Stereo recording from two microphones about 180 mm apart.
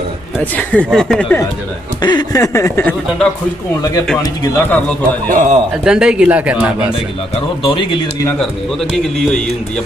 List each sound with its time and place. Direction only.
0.4 s speech: 10° left (ahead or behind)
2.0 s speech: 25° left (ahead or behind)
5.3 s a man's voice: 45° right (ahead or behind)
5.9 s speech: 5° right (ahead or behind)
7.6 s speech: 30° left (ahead or behind)